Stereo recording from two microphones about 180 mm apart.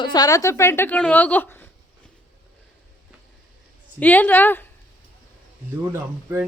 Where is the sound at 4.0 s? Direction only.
10° left (ahead or behind).